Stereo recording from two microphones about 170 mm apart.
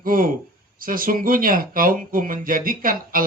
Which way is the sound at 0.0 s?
55° right (ahead or behind).